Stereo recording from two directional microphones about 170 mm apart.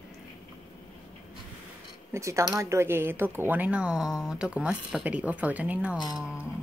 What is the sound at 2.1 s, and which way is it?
Speech, 15° right (ahead or behind).